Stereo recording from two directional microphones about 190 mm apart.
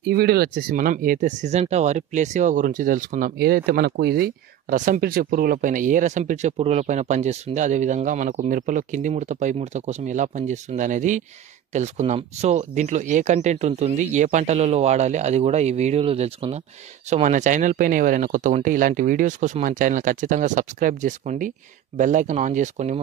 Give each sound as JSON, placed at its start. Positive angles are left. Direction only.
{"t": 0.0, "sound": "speech", "side_deg": -55}